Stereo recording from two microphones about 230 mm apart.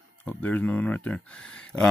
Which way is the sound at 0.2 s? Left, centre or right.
Centre.